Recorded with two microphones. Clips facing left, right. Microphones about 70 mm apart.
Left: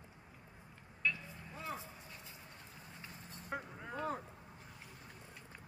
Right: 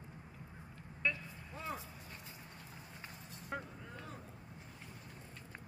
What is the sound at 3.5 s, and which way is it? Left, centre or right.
Vehicle, centre.